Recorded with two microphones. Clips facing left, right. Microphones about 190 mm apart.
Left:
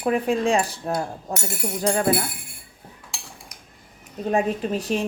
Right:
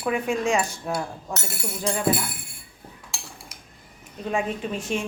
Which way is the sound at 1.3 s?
15° left (ahead or behind).